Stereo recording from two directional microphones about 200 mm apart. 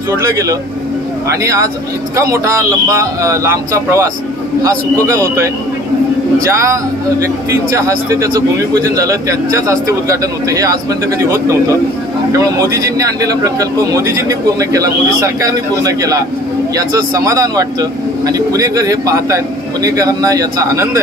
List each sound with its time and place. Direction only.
0.1 s speech: 15° right (ahead or behind)